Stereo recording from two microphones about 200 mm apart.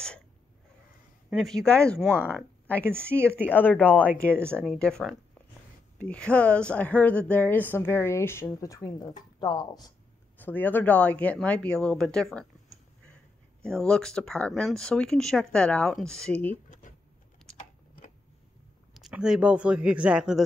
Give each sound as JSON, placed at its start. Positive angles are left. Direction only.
{"t": 1.3, "sound": "speech", "side_deg": 0}
{"t": 2.8, "sound": "speech", "side_deg": -10}
{"t": 3.3, "sound": "a woman's voice", "side_deg": 10}
{"t": 10.3, "sound": "a woman's voice", "side_deg": 10}
{"t": 13.6, "sound": "speech", "side_deg": 5}
{"t": 16.8, "sound": "a sound", "side_deg": 40}
{"t": 17.4, "sound": "typing", "side_deg": 0}
{"t": 18.9, "sound": "speech", "side_deg": 0}